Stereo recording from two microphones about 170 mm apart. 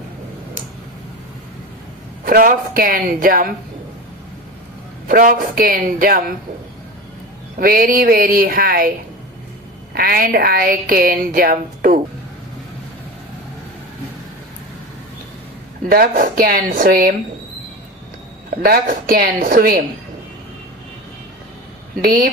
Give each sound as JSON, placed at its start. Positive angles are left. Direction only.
{"t": 2.2, "sound": "a woman's voice", "side_deg": -55}
{"t": 5.0, "sound": "a woman's voice", "side_deg": -55}
{"t": 7.6, "sound": "a woman's voice", "side_deg": -60}
{"t": 9.9, "sound": "a woman's voice", "side_deg": -65}
{"t": 15.9, "sound": "a woman's voice", "side_deg": -60}
{"t": 18.5, "sound": "a woman's voice", "side_deg": -60}
{"t": 22.0, "sound": "a woman's voice", "side_deg": -55}